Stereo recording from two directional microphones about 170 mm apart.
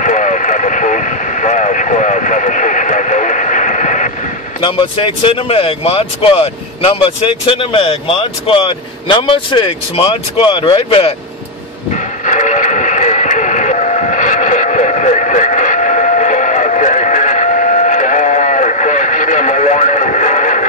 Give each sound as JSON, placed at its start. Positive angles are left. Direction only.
{"t": 0.0, "sound": "vehicle", "side_deg": 50}
{"t": 4.6, "sound": "speech", "side_deg": 30}
{"t": 11.9, "sound": "radio", "side_deg": 45}